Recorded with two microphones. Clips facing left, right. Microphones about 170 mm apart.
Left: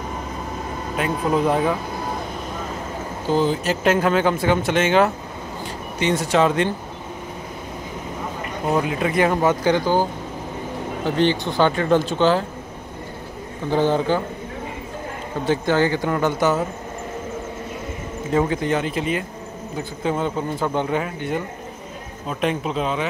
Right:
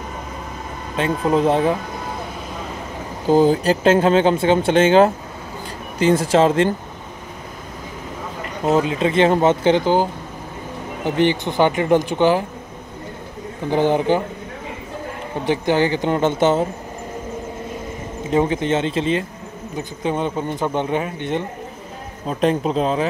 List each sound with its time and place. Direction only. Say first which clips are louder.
0.9 s speech: right 3 dB; 30° right (ahead or behind)
3.3 s speech: right 6 dB; 45° right (ahead or behind)
3.8 s a man's voice: right 3 dB; 25° right (ahead or behind)
8.6 s speech: right 4 dB; 25° right (ahead or behind)
11.1 s speech: right 2 dB; 15° right (ahead or behind)
13.7 s speech: right 2 dB; 15° right (ahead or behind)
15.4 s speech: right 1 dB; 15° right (ahead or behind)
18.3 s speech: right 2 dB; 20° right (ahead or behind)
22.3 s a man's voice: right 5 dB; 35° right (ahead or behind)